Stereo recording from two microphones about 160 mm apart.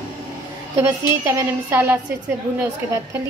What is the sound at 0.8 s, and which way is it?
A woman's voice, 15° right (ahead or behind).